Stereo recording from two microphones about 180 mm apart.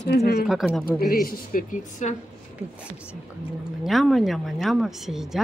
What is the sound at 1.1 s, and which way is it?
A woman's voice, 55° left (ahead or behind).